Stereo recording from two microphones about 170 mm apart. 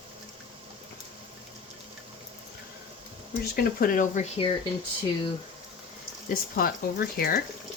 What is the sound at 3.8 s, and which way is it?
Speech, 50° left (ahead or behind).